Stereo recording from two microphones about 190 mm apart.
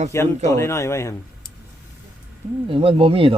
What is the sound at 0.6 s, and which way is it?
Speech, 15° left (ahead or behind).